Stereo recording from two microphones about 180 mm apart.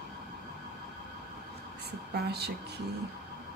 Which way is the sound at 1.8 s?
65° right (ahead or behind).